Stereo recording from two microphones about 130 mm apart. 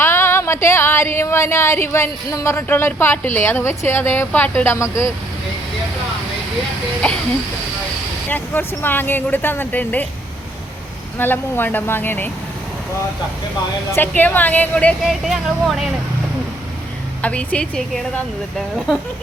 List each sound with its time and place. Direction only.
0.0 s speech: 20° left (ahead or behind)
8.3 s speech: 15° left (ahead or behind)
11.2 s speech: 15° left (ahead or behind)
13.9 s speech: 15° left (ahead or behind)
15.0 s speech: centre (ahead or behind)
17.2 s speech: 10° left (ahead or behind)